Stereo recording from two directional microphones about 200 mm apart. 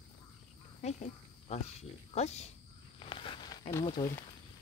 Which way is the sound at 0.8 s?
35° left (ahead or behind).